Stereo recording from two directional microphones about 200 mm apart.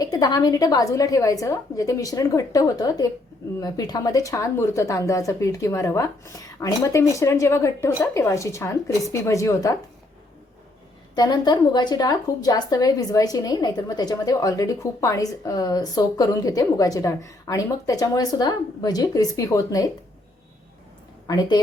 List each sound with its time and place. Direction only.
0.0 s a woman's voice: 20° left (ahead or behind)
11.1 s a woman's voice: 20° left (ahead or behind)